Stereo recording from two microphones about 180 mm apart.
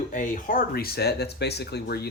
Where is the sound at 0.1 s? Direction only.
45° left (ahead or behind).